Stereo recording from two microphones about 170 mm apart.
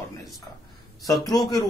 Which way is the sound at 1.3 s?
20° left (ahead or behind).